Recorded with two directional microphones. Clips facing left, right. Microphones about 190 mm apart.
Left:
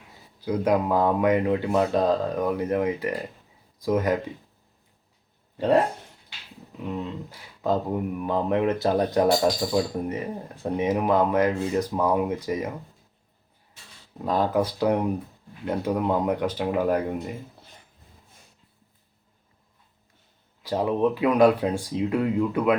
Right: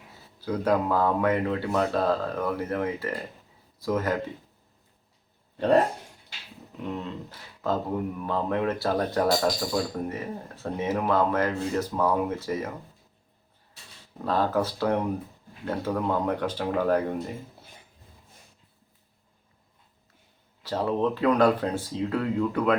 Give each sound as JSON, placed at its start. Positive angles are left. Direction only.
{"t": 0.4, "sound": "speech", "side_deg": 15}
{"t": 7.3, "sound": "speech", "side_deg": 15}
{"t": 14.3, "sound": "speech", "side_deg": 15}
{"t": 20.6, "sound": "speech", "side_deg": 15}